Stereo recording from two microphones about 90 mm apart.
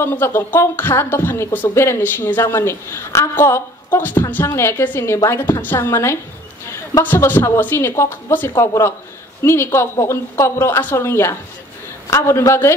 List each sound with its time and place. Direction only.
0.0 s a woman's voice: 25° left (ahead or behind)